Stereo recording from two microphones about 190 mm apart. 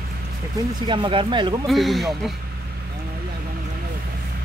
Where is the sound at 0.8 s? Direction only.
25° right (ahead or behind).